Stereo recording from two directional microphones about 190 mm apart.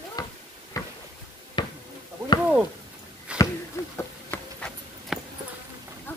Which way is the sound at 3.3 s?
5° right (ahead or behind).